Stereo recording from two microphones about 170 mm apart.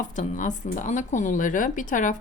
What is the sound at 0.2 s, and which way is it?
A woman's voice, 50° left (ahead or behind).